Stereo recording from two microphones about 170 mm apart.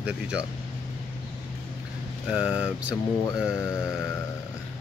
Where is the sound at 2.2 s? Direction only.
5° right (ahead or behind).